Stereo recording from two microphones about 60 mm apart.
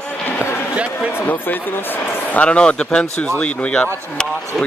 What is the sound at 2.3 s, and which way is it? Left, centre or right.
Speech, centre.